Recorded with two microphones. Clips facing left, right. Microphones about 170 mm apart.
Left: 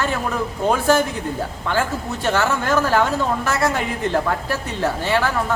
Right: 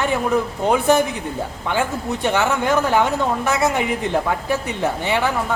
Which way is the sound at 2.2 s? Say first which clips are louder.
Right 1 dB; 15° right (ahead or behind).